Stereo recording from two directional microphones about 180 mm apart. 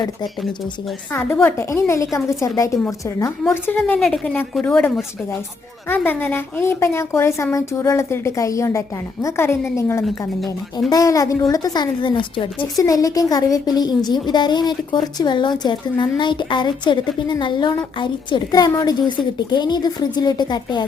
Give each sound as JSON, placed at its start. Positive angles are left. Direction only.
{"t": 1.1, "sound": "a woman's voice", "side_deg": 15}
{"t": 5.9, "sound": "a woman's voice", "side_deg": 10}
{"t": 10.0, "sound": "a woman's voice", "side_deg": 0}
{"t": 10.8, "sound": "a woman's voice", "side_deg": 20}